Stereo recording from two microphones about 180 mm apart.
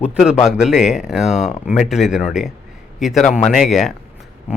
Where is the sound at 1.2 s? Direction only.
40° left (ahead or behind).